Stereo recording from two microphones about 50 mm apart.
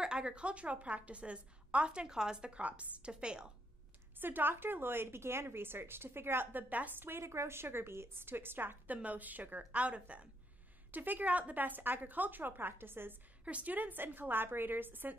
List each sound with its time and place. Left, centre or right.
0.0 s a woman's voice: centre
4.2 s a woman's voice: right
7.1 s a woman's voice: right
8.8 s a woman's voice: right
13.5 s speech: right